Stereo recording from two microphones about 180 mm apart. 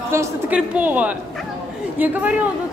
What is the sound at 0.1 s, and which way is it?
A woman's voice, 15° right (ahead or behind).